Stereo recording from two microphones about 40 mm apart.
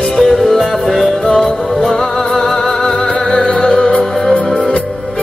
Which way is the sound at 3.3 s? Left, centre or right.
Centre.